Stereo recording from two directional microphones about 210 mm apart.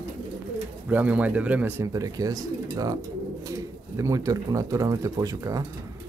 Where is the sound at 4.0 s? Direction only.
15° right (ahead or behind).